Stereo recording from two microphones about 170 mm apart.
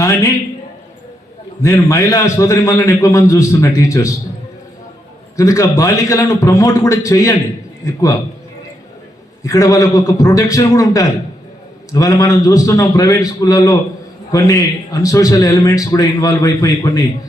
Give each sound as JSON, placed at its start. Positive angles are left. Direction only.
{"t": 0.0, "sound": "a man's voice", "side_deg": 15}
{"t": 1.6, "sound": "a man's voice", "side_deg": 15}
{"t": 5.4, "sound": "a man's voice", "side_deg": 20}
{"t": 9.4, "sound": "a man's voice", "side_deg": 20}